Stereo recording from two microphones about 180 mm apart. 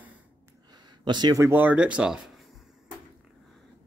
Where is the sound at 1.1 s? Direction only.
25° right (ahead or behind); by 2.2 s 5° right (ahead or behind).